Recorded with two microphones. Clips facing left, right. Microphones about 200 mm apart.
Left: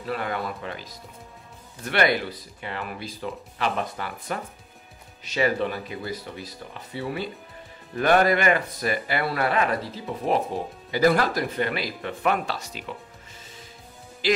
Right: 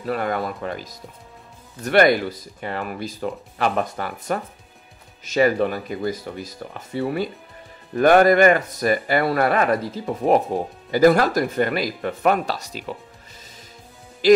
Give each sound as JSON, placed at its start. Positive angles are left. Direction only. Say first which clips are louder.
{"t": 0.0, "sound": "speech", "louder": "right 5 dB", "side_deg": -45}
{"t": 14.2, "sound": "speech", "louder": "right 10 dB", "side_deg": -45}